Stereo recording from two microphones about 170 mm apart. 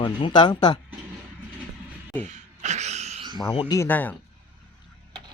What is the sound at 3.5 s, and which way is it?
Speech, 30° left (ahead or behind).